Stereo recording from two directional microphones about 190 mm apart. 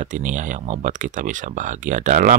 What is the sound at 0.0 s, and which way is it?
Speech, 40° right (ahead or behind).